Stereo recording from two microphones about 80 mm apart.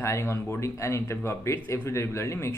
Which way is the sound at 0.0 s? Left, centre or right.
Left.